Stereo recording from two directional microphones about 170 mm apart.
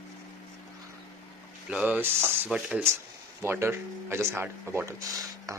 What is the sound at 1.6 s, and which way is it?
Speech, 5° right (ahead or behind).